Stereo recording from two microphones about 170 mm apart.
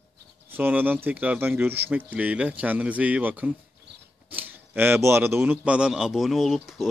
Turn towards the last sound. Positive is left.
turn(degrees=0)  # may be behind; listen again after turning